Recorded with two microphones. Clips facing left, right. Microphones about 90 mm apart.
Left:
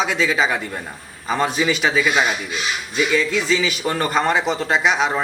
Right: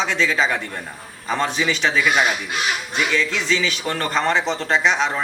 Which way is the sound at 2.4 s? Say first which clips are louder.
Right 2 dB; 60° right (ahead or behind).